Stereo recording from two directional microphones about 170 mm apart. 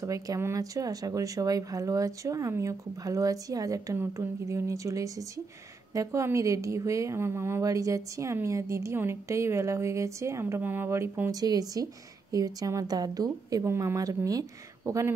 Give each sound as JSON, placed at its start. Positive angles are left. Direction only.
{"t": 0.0, "sound": "a woman's voice", "side_deg": -20}